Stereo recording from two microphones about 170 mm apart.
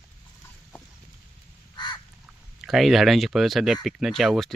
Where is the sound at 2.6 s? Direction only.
Centre (ahead or behind).